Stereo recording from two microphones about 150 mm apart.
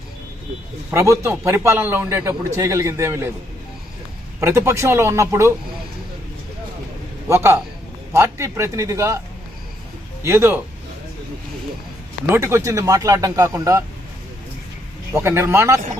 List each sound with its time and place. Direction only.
0.9 s a man's voice: 20° right (ahead or behind)
4.4 s speech: 20° right (ahead or behind)
7.3 s a man's voice: 15° right (ahead or behind)
10.2 s a man's voice: 15° right (ahead or behind)
12.3 s speech: 15° right (ahead or behind)
15.1 s a man's voice: 15° right (ahead or behind)